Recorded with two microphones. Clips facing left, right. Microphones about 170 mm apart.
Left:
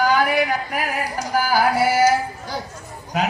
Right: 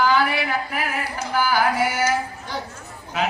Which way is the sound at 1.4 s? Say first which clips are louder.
Left 1 dB; 40° left (ahead or behind).